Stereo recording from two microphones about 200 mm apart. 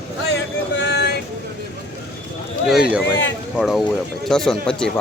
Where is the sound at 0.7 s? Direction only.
60° left (ahead or behind).